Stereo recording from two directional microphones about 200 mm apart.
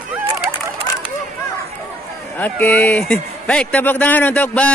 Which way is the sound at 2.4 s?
10° left (ahead or behind).